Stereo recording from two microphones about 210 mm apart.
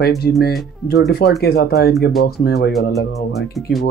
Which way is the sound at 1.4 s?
50° left (ahead or behind).